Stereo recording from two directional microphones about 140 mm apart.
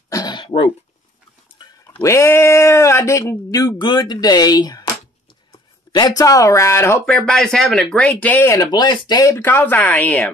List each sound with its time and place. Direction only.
0.1 s throat clearing: 30° left (ahead or behind)
1.6 s a sound: 30° left (ahead or behind)
2.0 s speech: 20° left (ahead or behind)
7.2 s speech: 5° left (ahead or behind)